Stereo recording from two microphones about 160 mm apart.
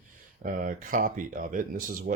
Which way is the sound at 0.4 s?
60° right (ahead or behind).